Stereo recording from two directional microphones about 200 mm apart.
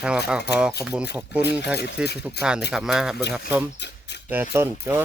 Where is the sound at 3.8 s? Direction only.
60° left (ahead or behind).